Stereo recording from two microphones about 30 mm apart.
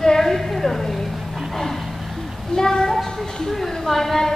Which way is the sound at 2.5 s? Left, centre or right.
Left.